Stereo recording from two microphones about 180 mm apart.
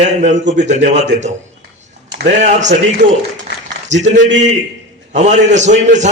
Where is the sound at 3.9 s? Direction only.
40° right (ahead or behind).